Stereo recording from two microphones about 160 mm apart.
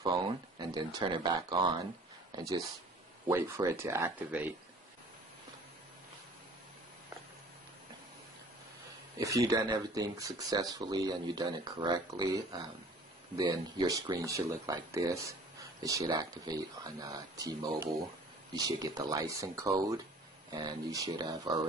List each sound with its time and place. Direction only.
0.0 s speech: 25° right (ahead or behind); by 4.6 s 10° right (ahead or behind)
9.2 s speech: 20° right (ahead or behind)